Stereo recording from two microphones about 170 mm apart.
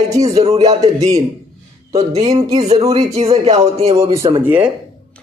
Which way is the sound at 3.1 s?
35° right (ahead or behind).